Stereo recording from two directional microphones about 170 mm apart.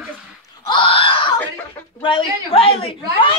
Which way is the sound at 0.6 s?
30° left (ahead or behind).